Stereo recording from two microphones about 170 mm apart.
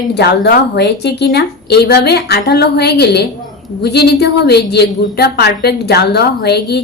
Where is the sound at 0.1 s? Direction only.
70° left (ahead or behind).